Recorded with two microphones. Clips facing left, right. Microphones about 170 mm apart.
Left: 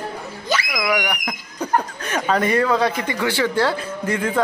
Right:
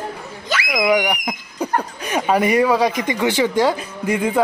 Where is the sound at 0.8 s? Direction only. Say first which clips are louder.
Right 5 dB; 20° right (ahead or behind).